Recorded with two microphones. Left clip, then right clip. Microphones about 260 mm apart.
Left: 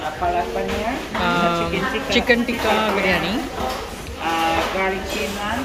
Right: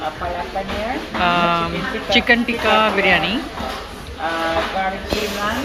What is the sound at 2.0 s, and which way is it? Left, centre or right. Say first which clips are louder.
A man's voice: right 4 dB; centre.